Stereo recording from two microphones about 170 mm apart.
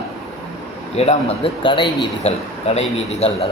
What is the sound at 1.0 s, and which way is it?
A man's voice, 35° left (ahead or behind).